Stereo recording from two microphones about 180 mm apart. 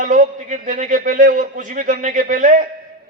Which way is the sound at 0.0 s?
45° right (ahead or behind).